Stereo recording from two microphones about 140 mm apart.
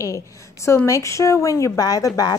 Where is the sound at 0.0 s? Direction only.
20° left (ahead or behind).